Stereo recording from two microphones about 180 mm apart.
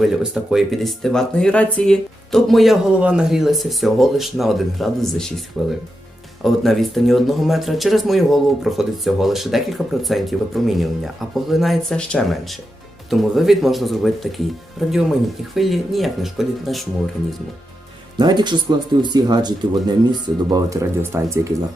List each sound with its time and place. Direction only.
0.0 s speech: 5° right (ahead or behind)
18.2 s speech: 25° right (ahead or behind)